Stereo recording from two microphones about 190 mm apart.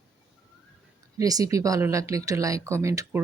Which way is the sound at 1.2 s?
20° right (ahead or behind).